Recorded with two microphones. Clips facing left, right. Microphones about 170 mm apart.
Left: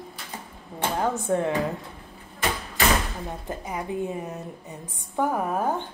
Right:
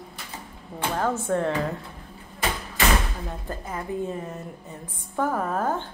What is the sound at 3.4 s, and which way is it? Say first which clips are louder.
A woman's voice: left 1 dB; 15° left (ahead or behind).